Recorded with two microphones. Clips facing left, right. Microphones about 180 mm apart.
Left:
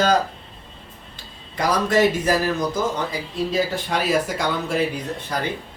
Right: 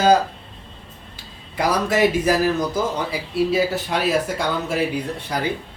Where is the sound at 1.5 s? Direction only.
10° right (ahead or behind).